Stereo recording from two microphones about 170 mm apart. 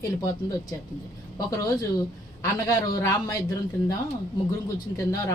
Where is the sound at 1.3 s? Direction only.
20° left (ahead or behind).